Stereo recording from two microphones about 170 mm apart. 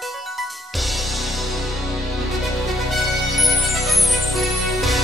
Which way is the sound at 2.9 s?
Centre (ahead or behind).